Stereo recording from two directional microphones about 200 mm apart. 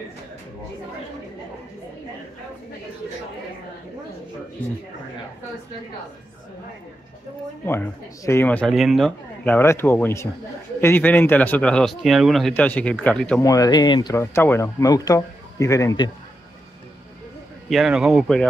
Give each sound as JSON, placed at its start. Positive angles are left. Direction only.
{"t": 7.6, "sound": "speech", "side_deg": 10}
{"t": 13.4, "sound": "speech", "side_deg": 20}
{"t": 17.6, "sound": "speech", "side_deg": 0}